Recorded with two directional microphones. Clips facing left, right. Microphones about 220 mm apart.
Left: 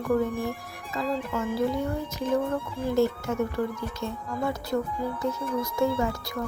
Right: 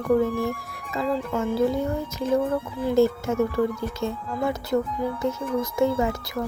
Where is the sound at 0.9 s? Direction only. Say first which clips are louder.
Right 3 dB; 25° right (ahead or behind).